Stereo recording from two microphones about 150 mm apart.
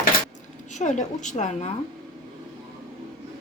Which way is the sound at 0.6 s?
55° left (ahead or behind).